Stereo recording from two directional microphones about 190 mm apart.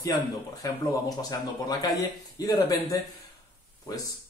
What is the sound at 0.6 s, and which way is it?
Speech, 20° left (ahead or behind).